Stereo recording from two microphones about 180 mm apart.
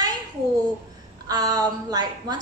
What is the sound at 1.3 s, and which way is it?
A woman's voice, 20° right (ahead or behind).